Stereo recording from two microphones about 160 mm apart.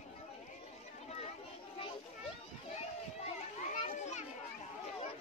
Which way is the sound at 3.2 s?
45° left (ahead or behind).